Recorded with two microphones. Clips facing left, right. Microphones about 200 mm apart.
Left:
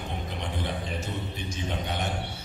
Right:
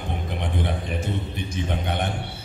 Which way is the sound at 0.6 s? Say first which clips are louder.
Right 4 dB; 55° right (ahead or behind).